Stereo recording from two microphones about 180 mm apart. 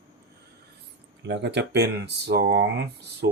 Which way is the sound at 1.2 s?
70° right (ahead or behind).